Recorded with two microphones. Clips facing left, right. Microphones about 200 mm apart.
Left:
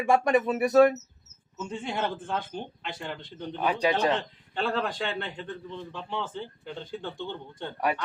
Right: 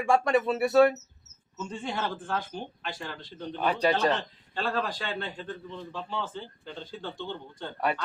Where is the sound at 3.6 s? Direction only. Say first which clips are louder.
Even; 10° left (ahead or behind).